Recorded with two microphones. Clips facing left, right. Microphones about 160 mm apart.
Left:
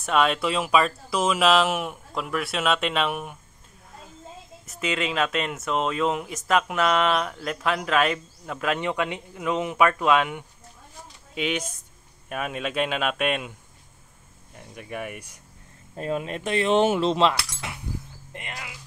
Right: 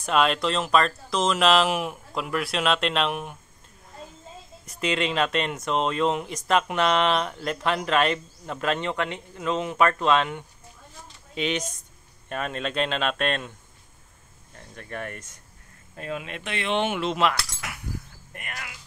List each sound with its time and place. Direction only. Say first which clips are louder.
0.0 s speech: even; centre (ahead or behind)
4.6 s speech: right 1 dB; 5° left (ahead or behind)
16.0 s speech: left 5 dB; 40° left (ahead or behind)
17.6 s a sound: left 2 dB; 25° left (ahead or behind)
18.3 s speech: left 1 dB; 20° left (ahead or behind)